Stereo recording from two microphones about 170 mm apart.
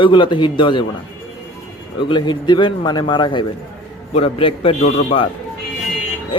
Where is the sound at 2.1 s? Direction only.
25° left (ahead or behind).